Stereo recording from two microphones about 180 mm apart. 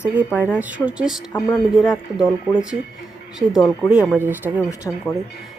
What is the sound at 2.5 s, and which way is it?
Speech, 15° right (ahead or behind).